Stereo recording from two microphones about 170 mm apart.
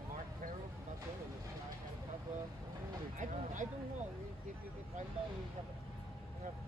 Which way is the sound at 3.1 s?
50° right (ahead or behind).